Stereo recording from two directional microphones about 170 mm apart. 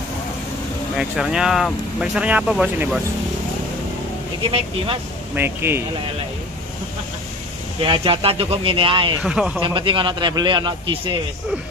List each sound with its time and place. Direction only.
0.9 s speech: 5° right (ahead or behind)
4.4 s speech: 30° right (ahead or behind)
5.3 s speech: 15° right (ahead or behind)
7.8 s speech: 30° right (ahead or behind)
9.2 s speech: 5° right (ahead or behind)
9.6 s speech: 30° right (ahead or behind)